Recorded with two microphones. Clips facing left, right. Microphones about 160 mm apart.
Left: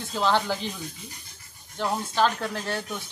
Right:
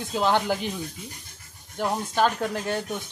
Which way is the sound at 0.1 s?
15° right (ahead or behind).